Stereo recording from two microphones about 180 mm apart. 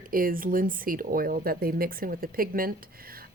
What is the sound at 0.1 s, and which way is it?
Speech, 50° right (ahead or behind).